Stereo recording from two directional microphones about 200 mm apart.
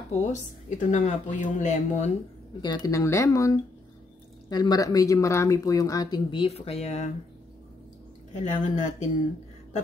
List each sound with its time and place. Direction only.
0.1 s speech: 35° left (ahead or behind)
2.6 s speech: 20° left (ahead or behind)
8.4 s speech: 35° left (ahead or behind)